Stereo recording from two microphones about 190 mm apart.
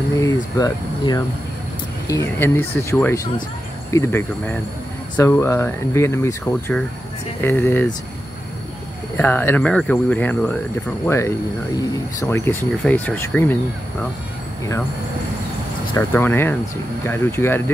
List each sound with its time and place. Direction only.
0.2 s speech: 20° left (ahead or behind)
9.1 s speech: 10° left (ahead or behind)
16.0 s speech: 10° left (ahead or behind)